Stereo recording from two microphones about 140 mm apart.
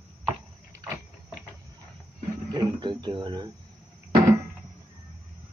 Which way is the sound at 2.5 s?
30° right (ahead or behind).